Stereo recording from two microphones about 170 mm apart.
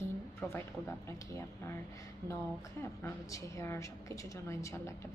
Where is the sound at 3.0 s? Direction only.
15° left (ahead or behind).